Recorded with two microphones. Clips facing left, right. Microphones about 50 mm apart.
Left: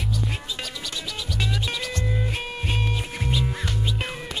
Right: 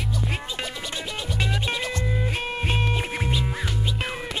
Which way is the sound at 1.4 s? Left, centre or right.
Right.